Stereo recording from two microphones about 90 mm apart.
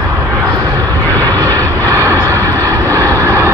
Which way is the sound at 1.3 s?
40° right (ahead or behind).